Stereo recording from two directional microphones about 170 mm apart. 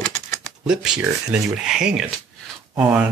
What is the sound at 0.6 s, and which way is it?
Speech, 5° right (ahead or behind).